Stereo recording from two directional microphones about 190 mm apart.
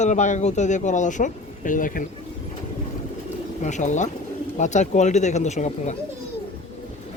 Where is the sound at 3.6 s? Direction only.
40° left (ahead or behind).